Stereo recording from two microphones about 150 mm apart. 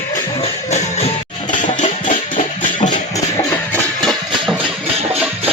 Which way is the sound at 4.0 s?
Centre (ahead or behind).